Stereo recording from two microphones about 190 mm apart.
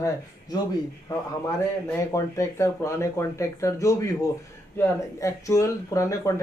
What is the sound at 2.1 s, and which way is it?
Speech, 15° left (ahead or behind).